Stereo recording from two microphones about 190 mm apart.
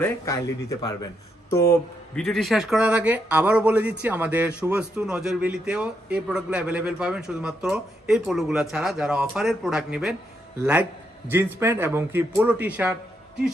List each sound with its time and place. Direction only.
0.0 s speech: 15° left (ahead or behind)
2.1 s a man's voice: centre (ahead or behind)